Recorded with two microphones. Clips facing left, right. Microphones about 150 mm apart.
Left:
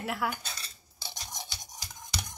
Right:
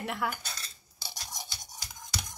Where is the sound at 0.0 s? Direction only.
Centre (ahead or behind).